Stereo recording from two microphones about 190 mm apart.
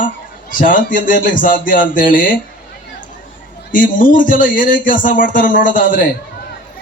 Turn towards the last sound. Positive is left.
turn(degrees=45)  # may be behind; listen again after turning